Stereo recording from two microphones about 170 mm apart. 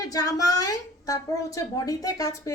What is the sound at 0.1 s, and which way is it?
A woman's voice, 20° left (ahead or behind).